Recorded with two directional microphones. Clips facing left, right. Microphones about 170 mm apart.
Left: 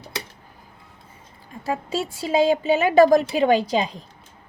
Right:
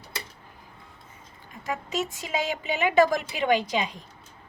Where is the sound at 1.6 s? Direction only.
30° left (ahead or behind).